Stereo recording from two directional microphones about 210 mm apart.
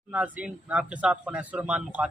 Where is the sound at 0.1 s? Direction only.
5° right (ahead or behind).